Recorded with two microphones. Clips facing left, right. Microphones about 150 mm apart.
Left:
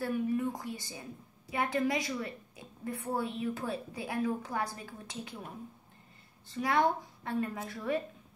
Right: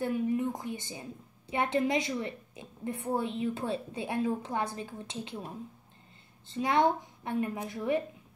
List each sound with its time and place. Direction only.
0.0 s a woman's voice: 20° right (ahead or behind)
6.5 s a woman's voice: 20° right (ahead or behind)